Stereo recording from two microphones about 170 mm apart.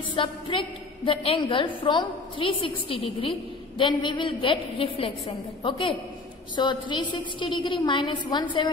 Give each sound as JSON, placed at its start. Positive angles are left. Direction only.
{"t": 0.1, "sound": "a woman's voice", "side_deg": 30}